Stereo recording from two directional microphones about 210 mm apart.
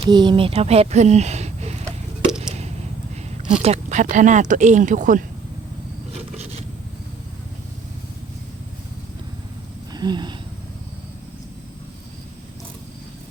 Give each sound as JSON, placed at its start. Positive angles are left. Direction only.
{"t": 0.0, "sound": "speech", "side_deg": -20}
{"t": 3.6, "sound": "speech", "side_deg": -30}
{"t": 6.3, "sound": "rub", "side_deg": -30}
{"t": 9.9, "sound": "a sound", "side_deg": -20}